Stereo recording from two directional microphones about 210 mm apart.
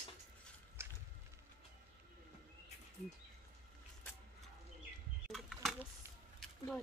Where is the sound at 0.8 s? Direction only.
10° right (ahead or behind).